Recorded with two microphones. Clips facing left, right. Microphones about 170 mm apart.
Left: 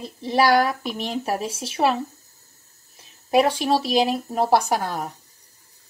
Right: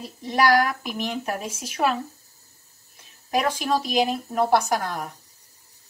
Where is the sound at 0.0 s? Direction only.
30° left (ahead or behind).